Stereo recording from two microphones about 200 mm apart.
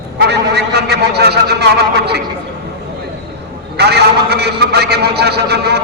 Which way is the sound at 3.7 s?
55° right (ahead or behind).